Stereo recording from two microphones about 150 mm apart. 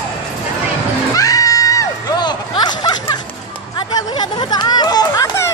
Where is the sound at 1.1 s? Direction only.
25° left (ahead or behind).